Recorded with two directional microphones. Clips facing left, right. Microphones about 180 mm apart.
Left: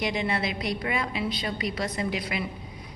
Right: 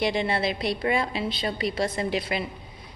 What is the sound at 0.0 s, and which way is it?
A woman's voice, 30° right (ahead or behind).